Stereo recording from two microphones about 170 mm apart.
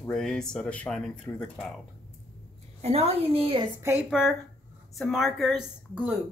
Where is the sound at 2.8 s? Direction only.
35° right (ahead or behind).